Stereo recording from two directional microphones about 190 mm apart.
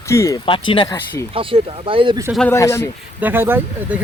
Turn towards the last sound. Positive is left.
turn(degrees=-10)  # may be behind; listen again after turning